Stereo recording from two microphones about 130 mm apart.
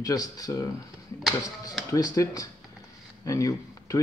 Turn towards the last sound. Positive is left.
turn(degrees=25)  # may be behind; listen again after turning